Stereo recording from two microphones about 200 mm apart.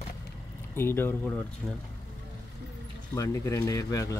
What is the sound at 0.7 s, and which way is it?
Speech, 10° left (ahead or behind).